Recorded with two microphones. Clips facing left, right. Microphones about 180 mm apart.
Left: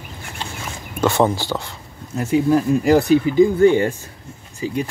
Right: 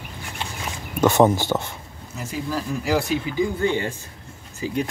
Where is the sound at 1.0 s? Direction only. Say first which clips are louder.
Right 1 dB; 20° right (ahead or behind).